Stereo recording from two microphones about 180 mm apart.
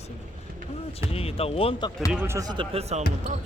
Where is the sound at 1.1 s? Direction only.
35° left (ahead or behind).